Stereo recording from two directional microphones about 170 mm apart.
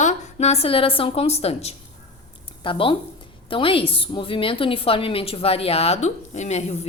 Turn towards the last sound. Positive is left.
turn(degrees=40)  # may be behind; listen again after turning